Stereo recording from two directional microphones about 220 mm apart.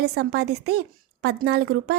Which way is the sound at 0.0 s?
50° right (ahead or behind).